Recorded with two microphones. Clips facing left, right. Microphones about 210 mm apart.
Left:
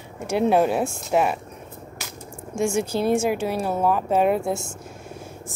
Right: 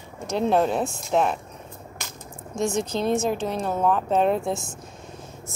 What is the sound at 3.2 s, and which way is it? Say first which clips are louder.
A woman's voice: left 2 dB; 10° left (ahead or behind).